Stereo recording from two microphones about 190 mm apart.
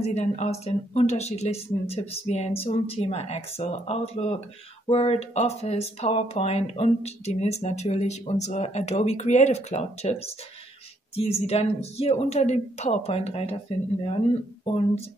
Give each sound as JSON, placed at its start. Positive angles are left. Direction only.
{"t": 0.0, "sound": "speech", "side_deg": 35}